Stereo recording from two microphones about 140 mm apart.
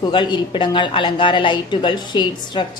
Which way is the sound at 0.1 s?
35° left (ahead or behind).